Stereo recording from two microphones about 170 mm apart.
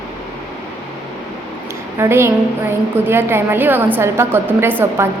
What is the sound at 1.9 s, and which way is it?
A woman's voice, 15° right (ahead or behind).